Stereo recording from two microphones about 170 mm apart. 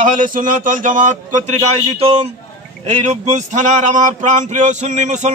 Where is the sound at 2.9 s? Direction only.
45° right (ahead or behind).